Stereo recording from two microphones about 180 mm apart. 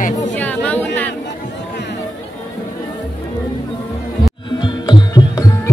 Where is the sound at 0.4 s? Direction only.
10° left (ahead or behind).